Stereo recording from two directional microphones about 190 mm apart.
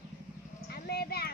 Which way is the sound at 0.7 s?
55° left (ahead or behind).